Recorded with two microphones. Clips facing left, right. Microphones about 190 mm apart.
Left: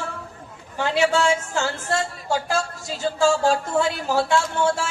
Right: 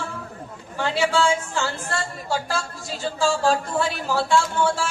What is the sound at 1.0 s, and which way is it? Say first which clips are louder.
Speech: left 1 dB; 20° left (ahead or behind).